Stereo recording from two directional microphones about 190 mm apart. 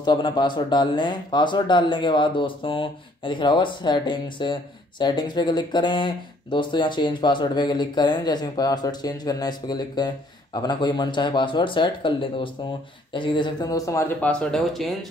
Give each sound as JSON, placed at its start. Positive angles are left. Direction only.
{"t": 0.0, "sound": "speech", "side_deg": 25}